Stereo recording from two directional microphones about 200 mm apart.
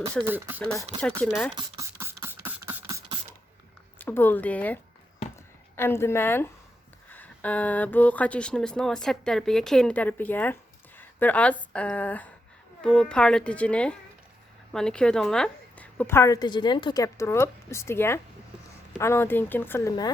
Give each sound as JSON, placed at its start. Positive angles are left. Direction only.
{"t": 0.3, "sound": "speech", "side_deg": -10}
{"t": 1.2, "sound": "a woman's voice", "side_deg": 5}
{"t": 1.5, "sound": "a sound", "side_deg": -20}
{"t": 2.2, "sound": "beatboxing", "side_deg": -10}
{"t": 3.9, "sound": "a woman's voice", "side_deg": 10}